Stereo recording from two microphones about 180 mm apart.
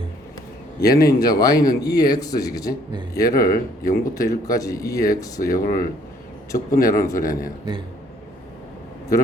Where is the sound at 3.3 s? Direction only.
55° left (ahead or behind).